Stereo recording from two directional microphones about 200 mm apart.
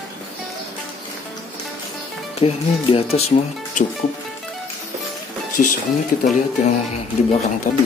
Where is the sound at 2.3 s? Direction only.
30° left (ahead or behind).